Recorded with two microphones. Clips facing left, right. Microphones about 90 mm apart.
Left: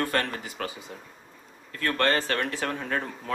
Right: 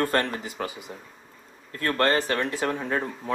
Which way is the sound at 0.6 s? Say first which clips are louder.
Right 2 dB; 20° right (ahead or behind).